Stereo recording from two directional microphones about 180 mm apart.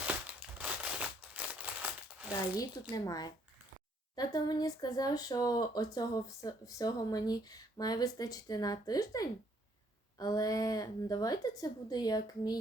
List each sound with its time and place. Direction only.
0.6 s crumpling: 10° right (ahead or behind)
2.9 s speech: 20° left (ahead or behind)